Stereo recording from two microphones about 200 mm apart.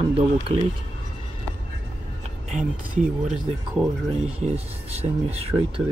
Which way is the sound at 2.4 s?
40° right (ahead or behind).